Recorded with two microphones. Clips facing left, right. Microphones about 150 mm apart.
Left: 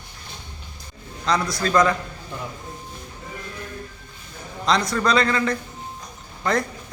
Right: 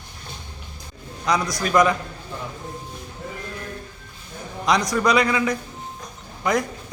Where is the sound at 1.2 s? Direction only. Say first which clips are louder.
Even; 15° right (ahead or behind).